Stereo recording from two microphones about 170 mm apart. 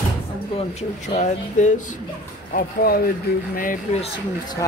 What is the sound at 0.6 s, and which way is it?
Speech, 40° left (ahead or behind).